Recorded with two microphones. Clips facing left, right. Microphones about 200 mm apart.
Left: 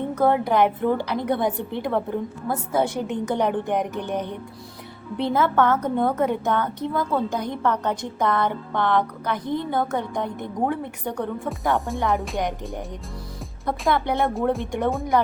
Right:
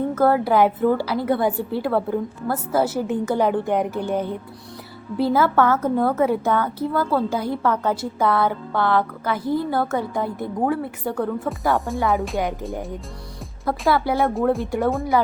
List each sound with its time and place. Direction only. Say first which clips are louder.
0.1 s a woman's voice: right 1 dB; 5° right (ahead or behind)